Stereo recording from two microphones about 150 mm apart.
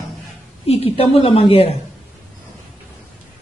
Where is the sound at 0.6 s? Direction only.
40° left (ahead or behind).